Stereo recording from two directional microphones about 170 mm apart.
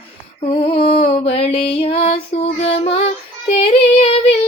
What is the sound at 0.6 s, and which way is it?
Music, 35° left (ahead or behind).